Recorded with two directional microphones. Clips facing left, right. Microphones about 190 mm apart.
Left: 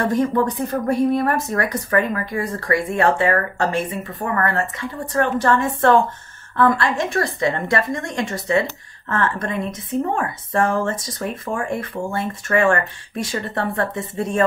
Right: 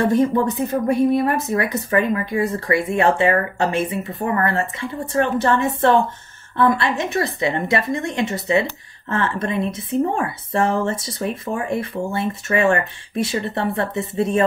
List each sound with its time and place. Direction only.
0.1 s speech: 25° right (ahead or behind)